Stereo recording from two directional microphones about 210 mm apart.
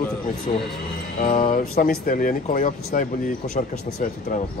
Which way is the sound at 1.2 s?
40° left (ahead or behind).